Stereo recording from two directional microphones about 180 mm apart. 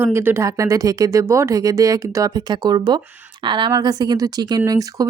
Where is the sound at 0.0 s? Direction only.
10° right (ahead or behind).